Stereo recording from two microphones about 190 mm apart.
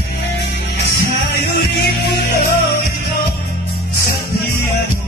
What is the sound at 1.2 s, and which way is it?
Music, 60° left (ahead or behind).